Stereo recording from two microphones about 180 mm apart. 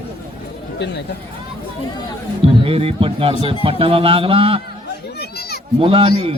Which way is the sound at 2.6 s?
30° right (ahead or behind).